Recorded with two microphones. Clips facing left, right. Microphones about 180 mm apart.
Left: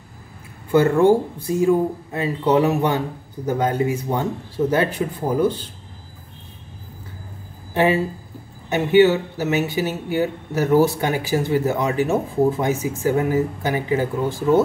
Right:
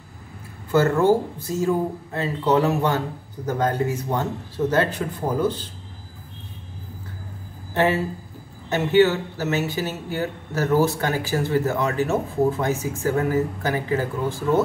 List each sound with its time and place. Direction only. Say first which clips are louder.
0.7 s speech: left 3 dB; 15° left (ahead or behind)
7.7 s speech: left 3 dB; 15° left (ahead or behind)